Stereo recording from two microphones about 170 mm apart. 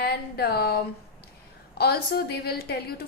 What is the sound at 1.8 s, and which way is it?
A woman's voice, 70° left (ahead or behind).